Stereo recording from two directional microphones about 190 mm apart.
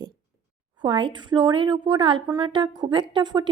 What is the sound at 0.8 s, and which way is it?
A woman's voice, 25° right (ahead or behind).